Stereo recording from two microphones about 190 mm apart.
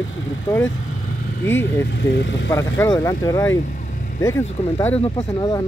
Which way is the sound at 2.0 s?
65° left (ahead or behind).